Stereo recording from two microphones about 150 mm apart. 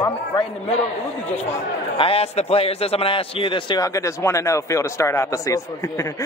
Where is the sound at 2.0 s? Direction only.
40° left (ahead or behind).